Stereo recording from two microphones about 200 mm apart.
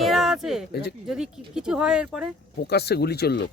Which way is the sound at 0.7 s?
55° left (ahead or behind).